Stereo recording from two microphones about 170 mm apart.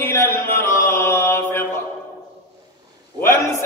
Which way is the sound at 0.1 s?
15° left (ahead or behind).